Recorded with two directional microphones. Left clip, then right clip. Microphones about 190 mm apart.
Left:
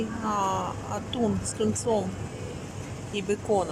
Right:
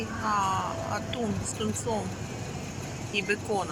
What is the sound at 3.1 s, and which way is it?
Speech, 15° left (ahead or behind).